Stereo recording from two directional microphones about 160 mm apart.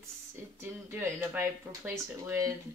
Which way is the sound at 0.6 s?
15° right (ahead or behind).